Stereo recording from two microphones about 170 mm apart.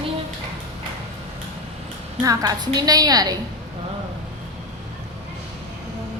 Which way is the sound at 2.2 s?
20° right (ahead or behind).